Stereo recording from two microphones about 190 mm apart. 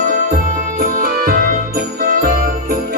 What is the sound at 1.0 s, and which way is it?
Music, 50° right (ahead or behind).